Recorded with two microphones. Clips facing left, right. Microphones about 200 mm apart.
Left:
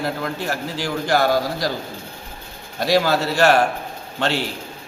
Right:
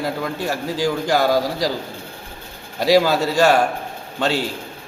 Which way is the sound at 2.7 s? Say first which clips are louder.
Right 3 dB; 10° right (ahead or behind).